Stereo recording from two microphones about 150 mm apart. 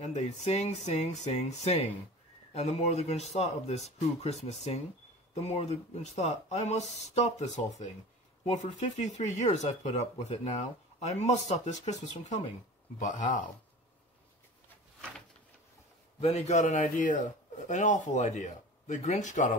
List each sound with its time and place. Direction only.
0.0 s speech: 50° left (ahead or behind)
16.2 s speech: 45° left (ahead or behind)